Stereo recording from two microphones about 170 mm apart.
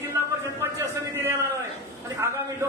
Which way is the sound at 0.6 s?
15° right (ahead or behind).